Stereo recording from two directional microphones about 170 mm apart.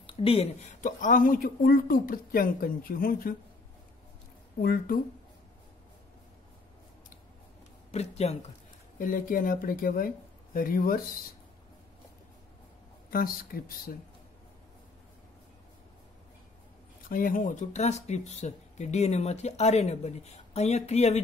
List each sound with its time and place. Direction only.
0.0 s speech: 35° left (ahead or behind); by 3.3 s 55° left (ahead or behind)
4.6 s speech: 60° left (ahead or behind)
7.9 s speech: 40° left (ahead or behind)
8.9 s speech: 50° left (ahead or behind)
13.1 s speech: 55° left (ahead or behind)
17.1 s speech: 55° left (ahead or behind)